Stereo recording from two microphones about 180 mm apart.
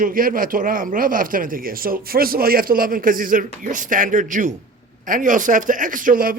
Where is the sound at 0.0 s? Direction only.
50° right (ahead or behind).